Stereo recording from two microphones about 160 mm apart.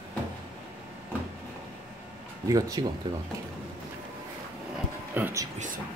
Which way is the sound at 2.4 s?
20° right (ahead or behind).